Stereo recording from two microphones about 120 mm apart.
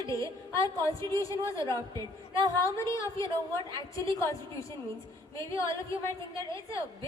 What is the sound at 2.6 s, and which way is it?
A woman's voice, 25° left (ahead or behind).